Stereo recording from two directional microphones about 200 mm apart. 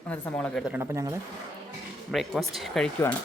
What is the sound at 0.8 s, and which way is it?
Speech, 15° right (ahead or behind).